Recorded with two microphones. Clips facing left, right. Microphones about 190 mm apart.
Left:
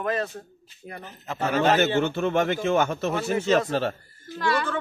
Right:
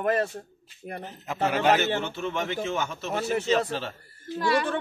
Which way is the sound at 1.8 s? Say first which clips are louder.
Left 5 dB; 55° left (ahead or behind).